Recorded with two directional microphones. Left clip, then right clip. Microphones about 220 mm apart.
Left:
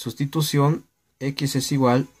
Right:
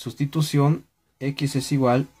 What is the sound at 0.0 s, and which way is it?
Speech, 30° left (ahead or behind).